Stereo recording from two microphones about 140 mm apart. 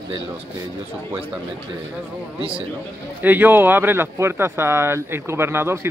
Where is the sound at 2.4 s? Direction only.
40° right (ahead or behind).